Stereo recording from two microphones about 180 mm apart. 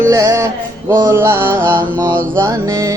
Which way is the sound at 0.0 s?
15° right (ahead or behind).